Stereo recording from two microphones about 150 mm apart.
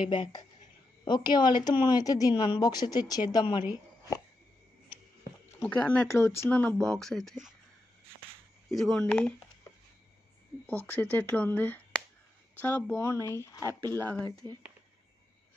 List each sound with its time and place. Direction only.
0.0 s a woman's voice: 35° left (ahead or behind)
5.6 s speech: 10° left (ahead or behind)
8.6 s speech: centre (ahead or behind)
10.9 s speech: 10° left (ahead or behind)
14.1 s speech: 5° left (ahead or behind)